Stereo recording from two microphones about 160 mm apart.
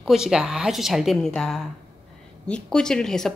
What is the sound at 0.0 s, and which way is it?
Speech, 5° right (ahead or behind).